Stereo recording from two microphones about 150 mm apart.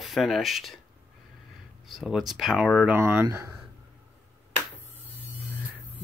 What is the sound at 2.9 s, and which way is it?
Speech, 15° right (ahead or behind).